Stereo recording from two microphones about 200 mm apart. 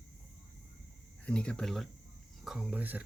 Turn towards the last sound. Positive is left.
turn(degrees=-10)  # may be behind; listen again after turning